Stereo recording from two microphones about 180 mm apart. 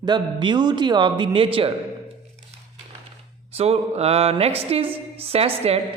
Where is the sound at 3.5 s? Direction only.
35° right (ahead or behind).